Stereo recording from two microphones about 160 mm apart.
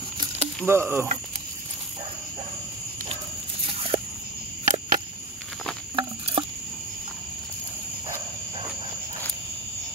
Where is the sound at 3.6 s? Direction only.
35° right (ahead or behind).